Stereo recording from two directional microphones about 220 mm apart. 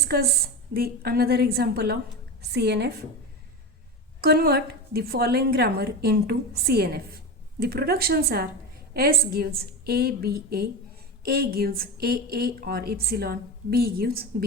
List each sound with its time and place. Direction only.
0.1 s a woman's voice: 45° right (ahead or behind)
4.2 s a woman's voice: 45° right (ahead or behind)